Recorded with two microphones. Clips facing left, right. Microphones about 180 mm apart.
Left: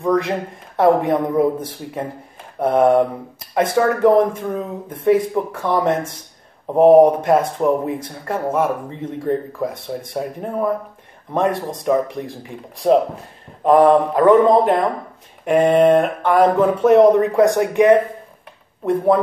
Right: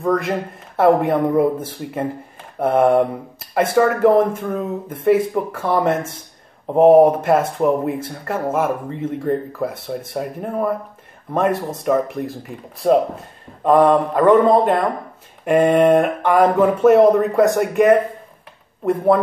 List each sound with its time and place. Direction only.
0.0 s speech: centre (ahead or behind)
7.1 s speech: 5° right (ahead or behind)